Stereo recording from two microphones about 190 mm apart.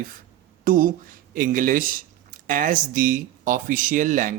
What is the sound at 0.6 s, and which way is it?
Speech, 45° right (ahead or behind).